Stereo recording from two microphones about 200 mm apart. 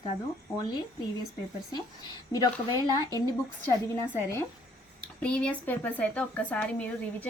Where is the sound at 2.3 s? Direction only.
20° left (ahead or behind).